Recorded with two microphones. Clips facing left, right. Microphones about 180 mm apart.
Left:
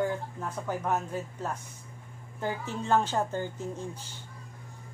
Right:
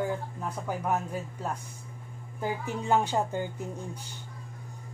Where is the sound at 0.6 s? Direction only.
10° right (ahead or behind).